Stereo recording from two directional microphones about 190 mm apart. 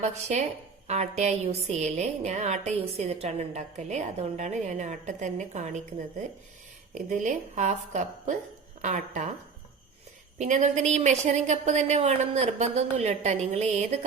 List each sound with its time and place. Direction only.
0.0 s a woman's voice: 35° right (ahead or behind)
6.9 s a woman's voice: 40° right (ahead or behind)
10.3 s a woman's voice: 35° right (ahead or behind)